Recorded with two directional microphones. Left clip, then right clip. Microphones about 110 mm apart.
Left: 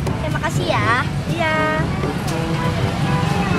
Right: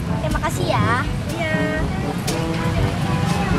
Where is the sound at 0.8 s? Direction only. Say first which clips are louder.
Left 5 dB; 10° left (ahead or behind).